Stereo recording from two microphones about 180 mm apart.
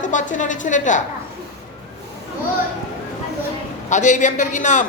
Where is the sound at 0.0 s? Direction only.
45° left (ahead or behind).